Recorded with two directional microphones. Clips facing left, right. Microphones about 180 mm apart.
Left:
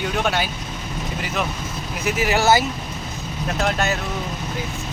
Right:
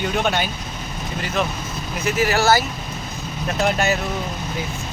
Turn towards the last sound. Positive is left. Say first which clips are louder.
# right 2 dB
turn(degrees=0)  # may be behind; listen again after turning